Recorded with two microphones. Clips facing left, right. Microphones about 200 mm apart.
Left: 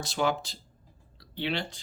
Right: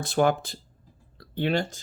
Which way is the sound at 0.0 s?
55° right (ahead or behind).